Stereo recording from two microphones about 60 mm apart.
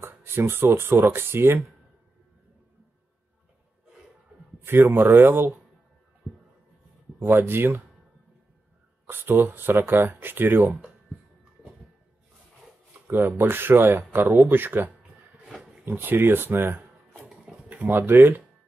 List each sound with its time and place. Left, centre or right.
0.0 s speech: right
4.6 s speech: right
6.2 s music: centre
7.2 s speech: right
9.0 s speech: right
13.0 s speech: right
15.4 s roaring cats: centre
15.8 s speech: right
17.5 s a sound: centre
17.8 s speech: right